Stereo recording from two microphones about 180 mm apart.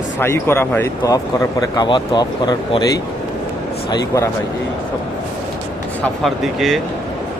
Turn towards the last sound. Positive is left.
turn(degrees=0)  # may be behind; listen again after turning